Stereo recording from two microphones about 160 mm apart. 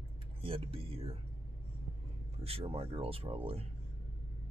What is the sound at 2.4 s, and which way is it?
Speech, 40° right (ahead or behind).